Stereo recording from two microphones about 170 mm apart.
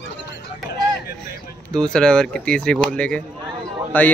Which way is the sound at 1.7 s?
5° left (ahead or behind).